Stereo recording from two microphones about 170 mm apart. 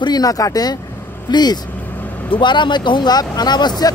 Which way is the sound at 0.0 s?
25° left (ahead or behind).